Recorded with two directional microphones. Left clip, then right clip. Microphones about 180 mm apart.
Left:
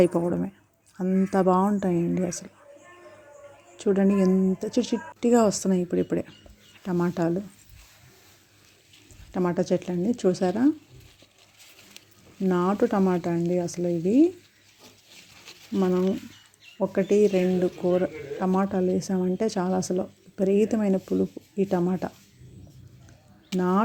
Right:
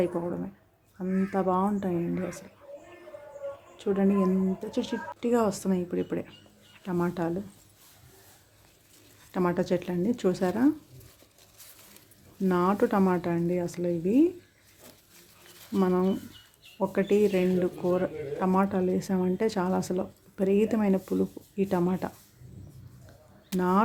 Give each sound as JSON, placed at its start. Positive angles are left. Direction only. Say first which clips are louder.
{"t": 0.0, "sound": "speech", "louder": "left 7 dB", "side_deg": 35}
{"t": 3.8, "sound": "speech", "louder": "left 4 dB", "side_deg": 30}
{"t": 9.3, "sound": "speech", "louder": "left 2 dB", "side_deg": 15}
{"t": 12.5, "sound": "speech", "louder": "left 1 dB", "side_deg": 15}
{"t": 15.7, "sound": "speech", "louder": "left 2 dB", "side_deg": 10}
{"t": 23.6, "sound": "speech", "louder": "left 1 dB", "side_deg": 15}